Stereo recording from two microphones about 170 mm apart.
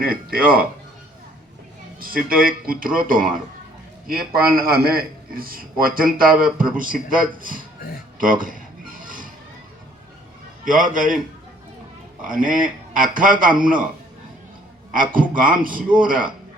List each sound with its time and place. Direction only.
0.0 s a man's voice: 60° right (ahead or behind)
2.0 s a man's voice: 55° right (ahead or behind)
9.0 s music: 50° right (ahead or behind)
10.7 s a man's voice: 50° right (ahead or behind)
12.3 s a man's voice: 50° right (ahead or behind)
14.9 s a man's voice: 55° right (ahead or behind)